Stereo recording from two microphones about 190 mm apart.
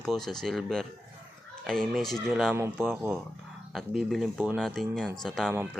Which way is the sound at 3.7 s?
Centre (ahead or behind).